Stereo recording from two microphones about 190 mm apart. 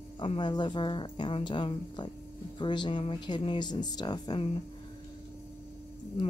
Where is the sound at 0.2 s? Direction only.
25° left (ahead or behind).